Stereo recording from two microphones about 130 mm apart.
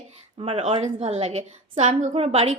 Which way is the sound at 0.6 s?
55° right (ahead or behind).